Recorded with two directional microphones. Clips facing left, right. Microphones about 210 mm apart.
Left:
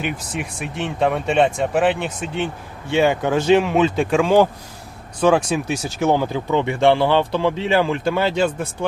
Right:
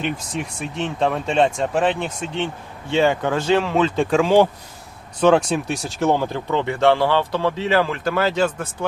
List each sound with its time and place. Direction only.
0.0 s speech: 5° left (ahead or behind)
4.1 s speech: 5° left (ahead or behind); by 8.9 s 20° left (ahead or behind)